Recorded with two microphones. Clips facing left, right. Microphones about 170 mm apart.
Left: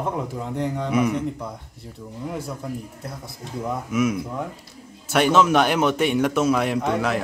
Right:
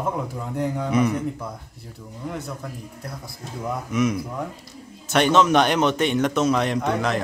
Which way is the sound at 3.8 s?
5° left (ahead or behind).